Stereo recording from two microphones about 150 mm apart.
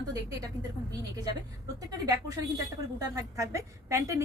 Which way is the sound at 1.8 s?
25° right (ahead or behind).